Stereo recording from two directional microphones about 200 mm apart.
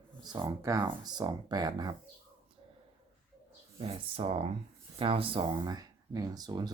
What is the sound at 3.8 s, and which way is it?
Speech, 25° right (ahead or behind).